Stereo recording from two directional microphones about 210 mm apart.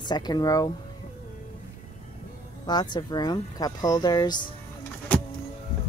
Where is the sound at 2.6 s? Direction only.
20° left (ahead or behind).